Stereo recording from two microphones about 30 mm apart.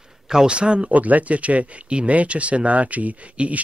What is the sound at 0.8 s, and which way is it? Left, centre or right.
Speech, right.